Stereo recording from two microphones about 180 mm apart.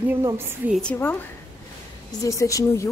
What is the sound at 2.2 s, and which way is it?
Speech, 20° left (ahead or behind).